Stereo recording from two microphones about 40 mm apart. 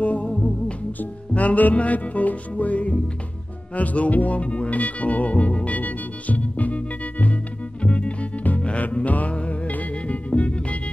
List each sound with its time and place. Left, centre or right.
0.0 s music: left
1.3 s speech: left
5.8 s music: left